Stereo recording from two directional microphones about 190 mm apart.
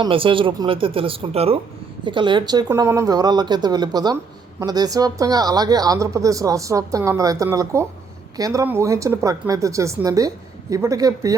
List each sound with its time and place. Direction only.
0.0 s speech: 30° right (ahead or behind)